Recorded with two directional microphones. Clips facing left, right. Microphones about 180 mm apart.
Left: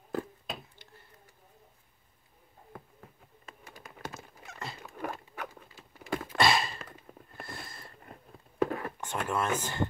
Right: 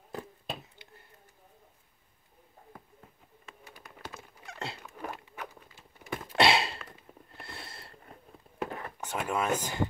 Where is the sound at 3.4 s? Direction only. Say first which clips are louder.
Left 1 dB; 45° left (ahead or behind).